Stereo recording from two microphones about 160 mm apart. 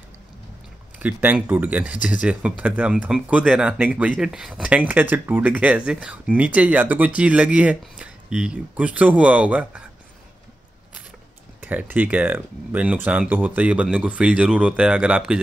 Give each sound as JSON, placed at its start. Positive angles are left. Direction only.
{"t": 0.9, "sound": "speech", "side_deg": -10}
{"t": 11.6, "sound": "speech", "side_deg": -10}